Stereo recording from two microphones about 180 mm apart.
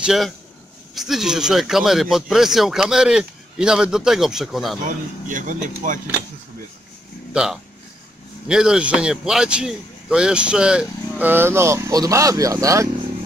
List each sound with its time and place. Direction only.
0.0 s a man's voice: centre (ahead or behind)
4.8 s speech: 45° right (ahead or behind)
8.5 s a man's voice: 5° right (ahead or behind)